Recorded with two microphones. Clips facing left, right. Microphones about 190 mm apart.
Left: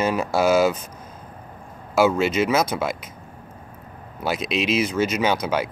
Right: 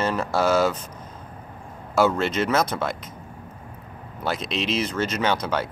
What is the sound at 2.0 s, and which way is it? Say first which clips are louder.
Speech: left 2 dB; 5° left (ahead or behind).